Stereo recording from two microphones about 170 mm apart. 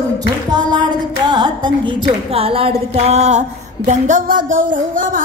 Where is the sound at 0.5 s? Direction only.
25° right (ahead or behind).